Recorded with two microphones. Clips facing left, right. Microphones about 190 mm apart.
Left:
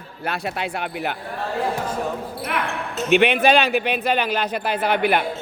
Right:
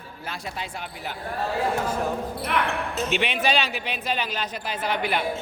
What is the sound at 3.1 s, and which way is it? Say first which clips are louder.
A man's voice: left 10 dB; 60° left (ahead or behind).